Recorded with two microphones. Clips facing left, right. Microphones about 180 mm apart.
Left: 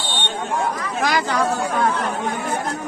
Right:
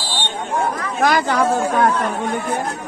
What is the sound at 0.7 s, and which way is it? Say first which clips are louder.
Speech: right 4 dB; 55° right (ahead or behind).